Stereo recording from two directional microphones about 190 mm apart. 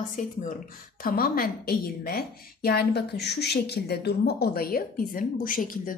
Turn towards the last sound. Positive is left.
turn(degrees=45)  # may be behind; listen again after turning